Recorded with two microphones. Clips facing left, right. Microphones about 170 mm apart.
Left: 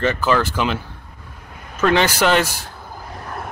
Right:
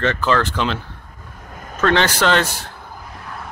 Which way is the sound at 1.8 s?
10° left (ahead or behind).